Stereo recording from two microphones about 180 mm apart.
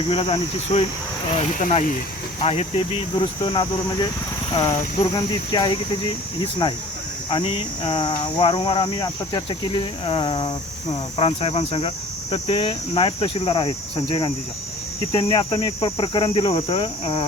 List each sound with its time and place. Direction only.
0.1 s speech: 30° left (ahead or behind)
2.4 s speech: 30° left (ahead or behind)